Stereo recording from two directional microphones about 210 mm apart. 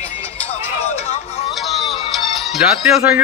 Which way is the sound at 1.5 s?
Centre (ahead or behind).